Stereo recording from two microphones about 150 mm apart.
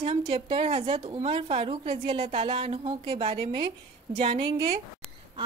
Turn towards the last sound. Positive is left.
turn(degrees=-45)  # may be behind; listen again after turning